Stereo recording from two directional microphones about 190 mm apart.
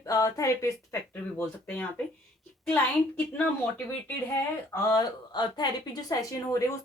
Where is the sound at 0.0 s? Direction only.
15° left (ahead or behind).